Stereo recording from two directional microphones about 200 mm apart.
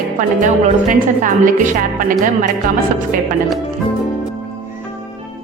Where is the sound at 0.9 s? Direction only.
40° right (ahead or behind).